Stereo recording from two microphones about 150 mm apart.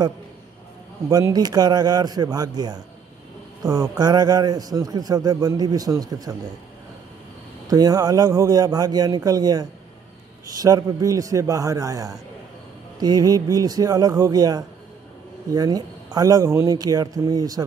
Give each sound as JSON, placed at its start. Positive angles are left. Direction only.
{"t": 1.0, "sound": "a man's voice", "side_deg": -25}
{"t": 7.7, "sound": "a man's voice", "side_deg": -25}